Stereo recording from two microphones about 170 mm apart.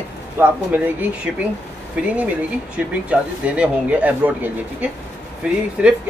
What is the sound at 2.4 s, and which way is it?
Speech, 10° right (ahead or behind).